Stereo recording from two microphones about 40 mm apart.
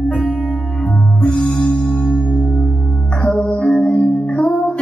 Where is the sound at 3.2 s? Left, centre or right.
Left.